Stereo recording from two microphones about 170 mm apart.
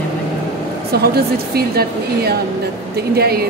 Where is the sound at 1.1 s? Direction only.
65° right (ahead or behind).